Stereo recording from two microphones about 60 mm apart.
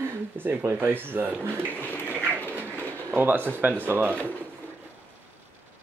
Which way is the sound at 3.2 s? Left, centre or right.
Right.